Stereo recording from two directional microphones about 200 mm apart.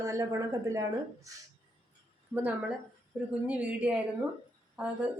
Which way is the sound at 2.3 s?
5° right (ahead or behind).